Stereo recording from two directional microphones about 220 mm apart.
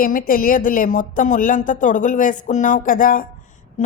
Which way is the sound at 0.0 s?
40° left (ahead or behind).